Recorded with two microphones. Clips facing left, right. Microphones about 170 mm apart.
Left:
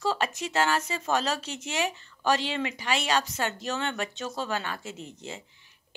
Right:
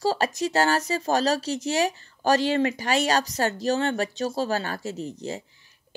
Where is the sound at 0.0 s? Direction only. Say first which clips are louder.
Right 5 dB; 35° right (ahead or behind).